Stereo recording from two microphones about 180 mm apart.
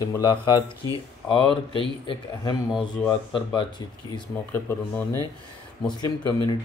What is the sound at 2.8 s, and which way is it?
Speech, 25° left (ahead or behind).